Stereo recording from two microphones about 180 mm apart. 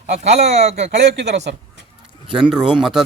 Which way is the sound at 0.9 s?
70° right (ahead or behind).